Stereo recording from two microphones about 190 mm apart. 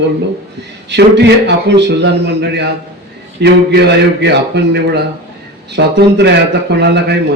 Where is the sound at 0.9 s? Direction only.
65° right (ahead or behind).